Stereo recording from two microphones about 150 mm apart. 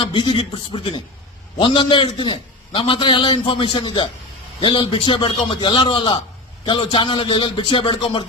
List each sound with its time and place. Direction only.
0.0 s a man's voice: 35° left (ahead or behind)